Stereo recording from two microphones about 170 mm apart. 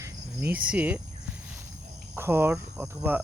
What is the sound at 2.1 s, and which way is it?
Cricket, 15° right (ahead or behind).